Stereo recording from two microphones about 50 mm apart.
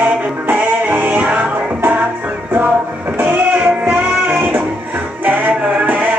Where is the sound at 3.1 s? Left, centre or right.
Right.